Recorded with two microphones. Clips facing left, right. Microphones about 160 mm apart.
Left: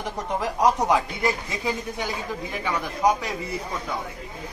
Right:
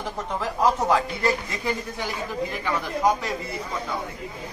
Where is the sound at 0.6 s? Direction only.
15° left (ahead or behind).